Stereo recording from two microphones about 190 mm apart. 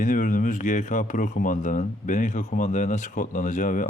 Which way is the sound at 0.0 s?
45° left (ahead or behind).